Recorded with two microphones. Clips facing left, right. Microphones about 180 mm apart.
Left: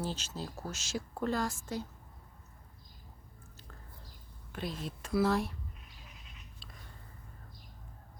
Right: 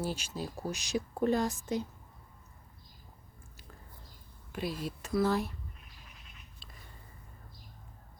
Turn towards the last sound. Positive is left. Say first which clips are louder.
# left 1 dB
turn(degrees=-5)  # may be behind; listen again after turning